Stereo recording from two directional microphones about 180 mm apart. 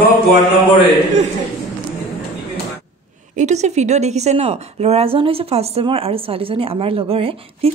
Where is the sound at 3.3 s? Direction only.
40° right (ahead or behind).